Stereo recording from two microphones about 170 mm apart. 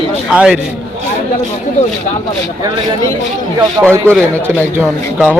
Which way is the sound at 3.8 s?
10° right (ahead or behind).